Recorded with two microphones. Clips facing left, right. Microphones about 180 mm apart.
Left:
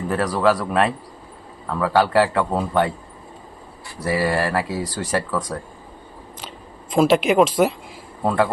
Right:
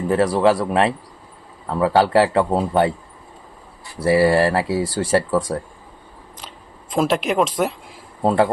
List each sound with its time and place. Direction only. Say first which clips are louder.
0.1 s speech: right 3 dB; 25° right (ahead or behind)
4.0 s speech: right 6 dB; 30° right (ahead or behind)
6.9 s speech: left 3 dB; centre (ahead or behind)
8.2 s speech: right 3 dB; 25° right (ahead or behind)